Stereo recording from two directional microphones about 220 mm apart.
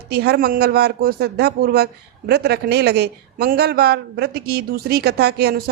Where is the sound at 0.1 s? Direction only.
50° right (ahead or behind).